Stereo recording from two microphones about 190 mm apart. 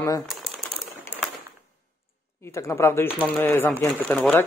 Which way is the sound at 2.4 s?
15° left (ahead or behind).